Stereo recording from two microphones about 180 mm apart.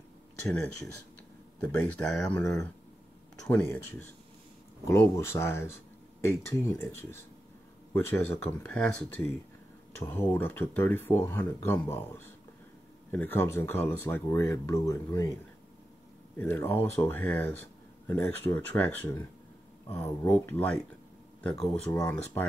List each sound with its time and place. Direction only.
1.6 s speech: 5° left (ahead or behind)
16.3 s speech: 10° left (ahead or behind)